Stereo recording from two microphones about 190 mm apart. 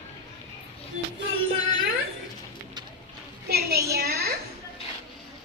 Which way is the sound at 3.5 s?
55° right (ahead or behind).